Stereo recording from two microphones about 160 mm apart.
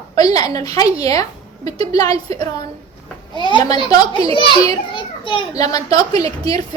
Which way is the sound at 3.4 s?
25° left (ahead or behind).